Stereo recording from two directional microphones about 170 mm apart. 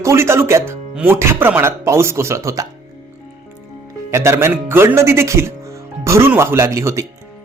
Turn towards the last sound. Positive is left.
turn(degrees=-20)  # may be behind; listen again after turning